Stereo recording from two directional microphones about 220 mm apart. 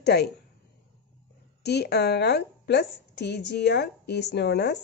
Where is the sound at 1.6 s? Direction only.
50° left (ahead or behind).